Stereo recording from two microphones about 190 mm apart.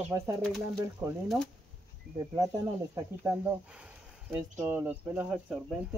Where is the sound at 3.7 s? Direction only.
5° right (ahead or behind).